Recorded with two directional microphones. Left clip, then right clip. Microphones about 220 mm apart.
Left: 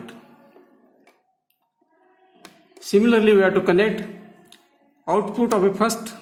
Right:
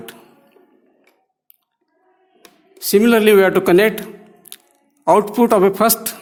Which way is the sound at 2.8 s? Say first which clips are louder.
Right 4 dB; 45° right (ahead or behind).